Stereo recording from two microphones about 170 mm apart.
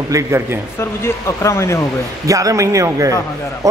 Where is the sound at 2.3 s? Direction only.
20° right (ahead or behind).